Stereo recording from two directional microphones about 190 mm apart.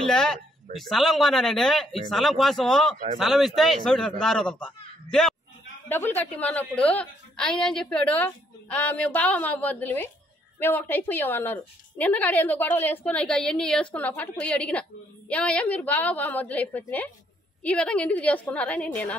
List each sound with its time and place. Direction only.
0.0 s a sound: 5° left (ahead or behind)
0.7 s speech: centre (ahead or behind)
5.9 s a woman's voice: 10° left (ahead or behind)